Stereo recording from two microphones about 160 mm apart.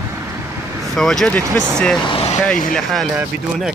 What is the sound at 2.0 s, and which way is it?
Vehicle, 35° left (ahead or behind).